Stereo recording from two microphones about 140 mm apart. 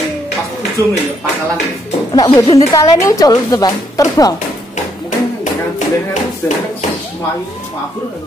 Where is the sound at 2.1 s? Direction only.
30° left (ahead or behind).